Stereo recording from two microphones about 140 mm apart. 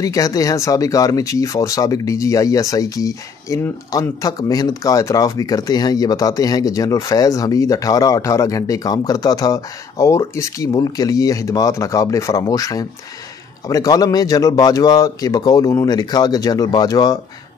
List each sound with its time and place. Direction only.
0.0 s speech: 25° left (ahead or behind)